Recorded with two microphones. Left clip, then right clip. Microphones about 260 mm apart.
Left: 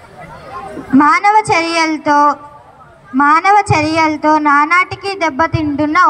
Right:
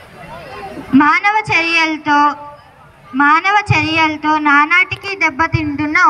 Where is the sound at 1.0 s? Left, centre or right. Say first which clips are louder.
Left 3 dB; centre.